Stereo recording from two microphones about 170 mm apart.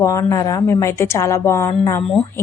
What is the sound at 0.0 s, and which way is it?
A woman's voice, 20° left (ahead or behind).